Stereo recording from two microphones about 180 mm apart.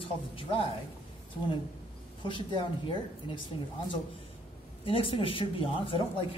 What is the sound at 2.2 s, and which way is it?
Speech, 25° left (ahead or behind).